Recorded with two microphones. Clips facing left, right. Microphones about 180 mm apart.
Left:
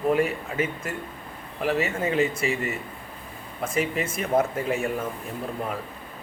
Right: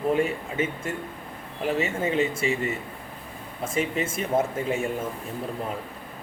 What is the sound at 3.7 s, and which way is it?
Speech, 25° right (ahead or behind).